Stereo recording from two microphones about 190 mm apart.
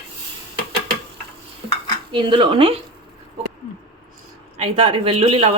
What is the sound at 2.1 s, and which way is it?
Speech, 25° right (ahead or behind).